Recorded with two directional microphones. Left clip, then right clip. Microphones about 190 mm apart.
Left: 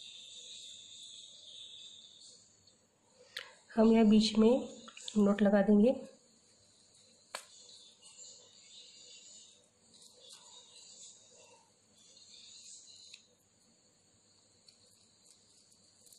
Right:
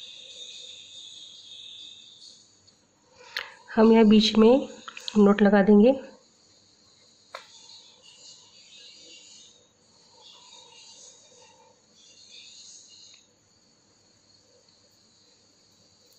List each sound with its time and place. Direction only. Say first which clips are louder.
3.3 s speech: right 9 dB; 25° right (ahead or behind)